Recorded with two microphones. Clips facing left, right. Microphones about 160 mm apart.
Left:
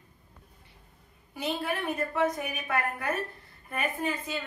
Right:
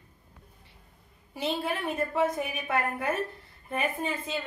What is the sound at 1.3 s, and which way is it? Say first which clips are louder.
A woman's voice: right 1 dB; 30° right (ahead or behind).